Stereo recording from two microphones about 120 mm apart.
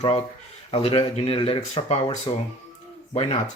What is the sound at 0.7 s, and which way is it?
Speech, 50° left (ahead or behind).